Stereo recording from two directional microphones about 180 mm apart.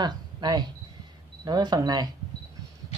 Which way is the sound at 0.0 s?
25° right (ahead or behind).